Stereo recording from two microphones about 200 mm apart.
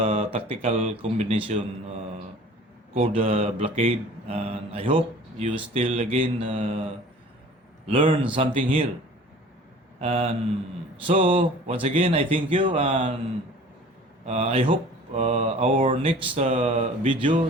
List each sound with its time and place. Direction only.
0.0 s mantra: 30° right (ahead or behind)
2.9 s mantra: 30° right (ahead or behind)
7.9 s mantra: 25° right (ahead or behind)
10.0 s mantra: 30° right (ahead or behind)
14.3 s mantra: 30° right (ahead or behind)